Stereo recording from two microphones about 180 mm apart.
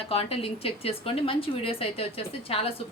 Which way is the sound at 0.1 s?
30° left (ahead or behind).